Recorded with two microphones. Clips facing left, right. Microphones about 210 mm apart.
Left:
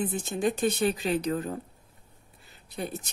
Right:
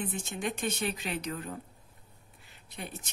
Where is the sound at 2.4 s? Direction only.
40° left (ahead or behind).